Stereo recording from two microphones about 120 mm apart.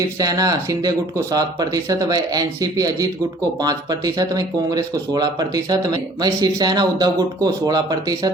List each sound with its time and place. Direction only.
0.2 s speech: 30° right (ahead or behind)